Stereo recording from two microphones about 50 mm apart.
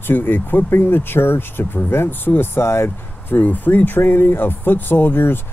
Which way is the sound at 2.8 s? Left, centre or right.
Left.